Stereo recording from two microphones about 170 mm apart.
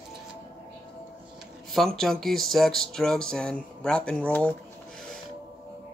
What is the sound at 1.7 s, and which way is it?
Speech, centre (ahead or behind).